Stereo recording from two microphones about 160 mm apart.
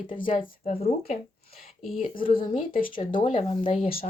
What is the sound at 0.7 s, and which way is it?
Speech, 40° left (ahead or behind).